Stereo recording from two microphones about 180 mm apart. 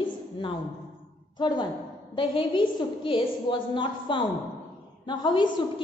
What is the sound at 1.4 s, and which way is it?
A woman's voice, 25° left (ahead or behind).